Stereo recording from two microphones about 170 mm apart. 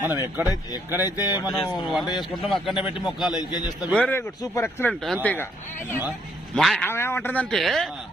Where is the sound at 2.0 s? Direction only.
25° left (ahead or behind).